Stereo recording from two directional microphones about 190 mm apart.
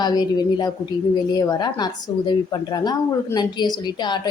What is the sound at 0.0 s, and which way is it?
A woman's voice, 20° left (ahead or behind).